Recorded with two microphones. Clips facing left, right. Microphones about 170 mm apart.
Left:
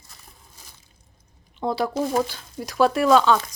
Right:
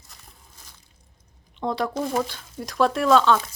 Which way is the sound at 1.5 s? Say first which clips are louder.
Left 2 dB; 5° left (ahead or behind).